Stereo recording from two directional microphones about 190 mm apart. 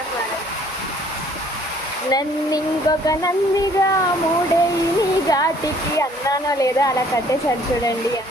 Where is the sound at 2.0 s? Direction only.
20° left (ahead or behind).